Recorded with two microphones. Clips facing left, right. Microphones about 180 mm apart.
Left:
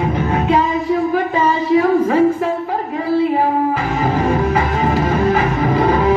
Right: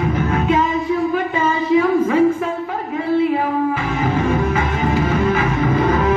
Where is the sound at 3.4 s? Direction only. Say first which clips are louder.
Left 2 dB; 35° left (ahead or behind).